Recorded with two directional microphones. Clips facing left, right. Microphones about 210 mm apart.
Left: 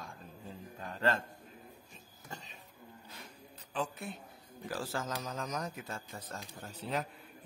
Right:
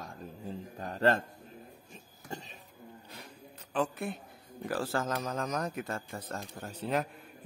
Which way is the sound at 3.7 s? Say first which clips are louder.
Right 6 dB; 60° right (ahead or behind).